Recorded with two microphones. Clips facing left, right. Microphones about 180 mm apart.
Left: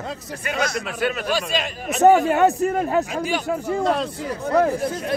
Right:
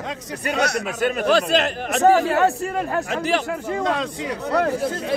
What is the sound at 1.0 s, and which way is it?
Speech, 45° right (ahead or behind).